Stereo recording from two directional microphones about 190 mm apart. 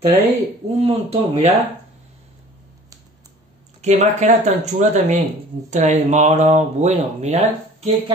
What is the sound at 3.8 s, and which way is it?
Speech, 35° right (ahead or behind).